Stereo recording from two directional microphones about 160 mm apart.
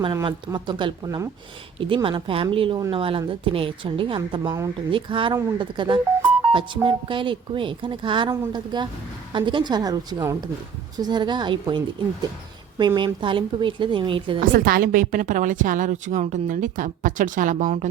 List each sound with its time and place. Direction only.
0.0 s speech: 25° right (ahead or behind)
13.0 s speech: 30° right (ahead or behind)
14.4 s a woman's voice: 60° right (ahead or behind)